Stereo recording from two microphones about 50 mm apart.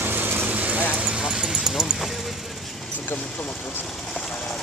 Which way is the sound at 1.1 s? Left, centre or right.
Centre.